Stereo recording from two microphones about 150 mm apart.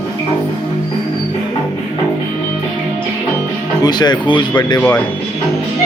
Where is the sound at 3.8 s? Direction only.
30° left (ahead or behind).